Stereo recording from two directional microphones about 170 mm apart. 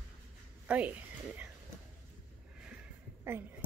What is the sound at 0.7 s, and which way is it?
Speech, 10° right (ahead or behind).